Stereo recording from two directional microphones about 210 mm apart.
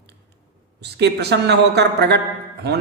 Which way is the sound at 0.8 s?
50° right (ahead or behind).